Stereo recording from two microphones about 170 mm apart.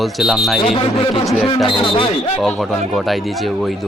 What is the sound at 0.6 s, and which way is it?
Speech, 30° left (ahead or behind).